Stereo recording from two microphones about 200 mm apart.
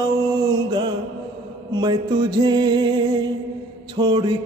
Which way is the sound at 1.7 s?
20° right (ahead or behind).